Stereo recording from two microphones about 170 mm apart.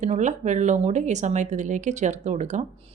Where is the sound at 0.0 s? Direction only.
45° right (ahead or behind).